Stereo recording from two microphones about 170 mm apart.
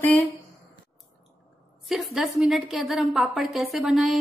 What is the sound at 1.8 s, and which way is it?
A woman's voice, centre (ahead or behind).